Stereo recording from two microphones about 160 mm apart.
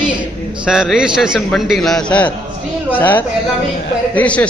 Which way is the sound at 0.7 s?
5° right (ahead or behind).